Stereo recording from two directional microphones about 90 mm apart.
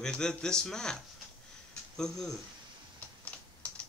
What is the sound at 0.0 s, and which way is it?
Speech, 10° left (ahead or behind).